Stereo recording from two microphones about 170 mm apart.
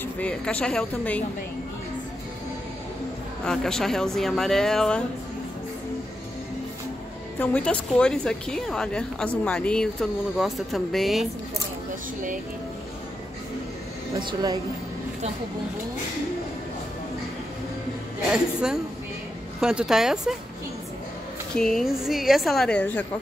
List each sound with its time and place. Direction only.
0.0 s speech: 5° left (ahead or behind)
3.4 s a woman's voice: 5° left (ahead or behind)
7.3 s a woman's voice: 10° left (ahead or behind)
14.1 s speech: 25° right (ahead or behind)
18.3 s a woman's voice: 5° right (ahead or behind)
21.5 s a woman's voice: centre (ahead or behind)